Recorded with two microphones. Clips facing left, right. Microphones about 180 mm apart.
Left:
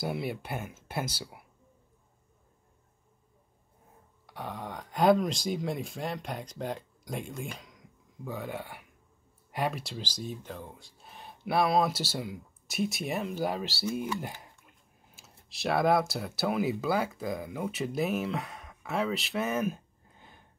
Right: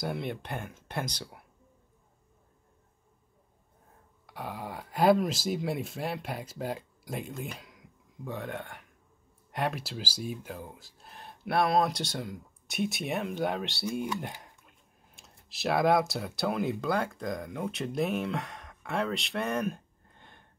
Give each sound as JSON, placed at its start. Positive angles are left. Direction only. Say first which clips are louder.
{"t": 0.0, "sound": "speech", "louder": "left 1 dB", "side_deg": 5}
{"t": 4.3, "sound": "speech", "louder": "even", "side_deg": 0}